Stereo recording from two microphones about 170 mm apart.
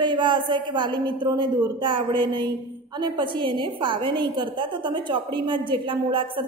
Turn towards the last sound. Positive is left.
turn(degrees=-30)  # may be behind; listen again after turning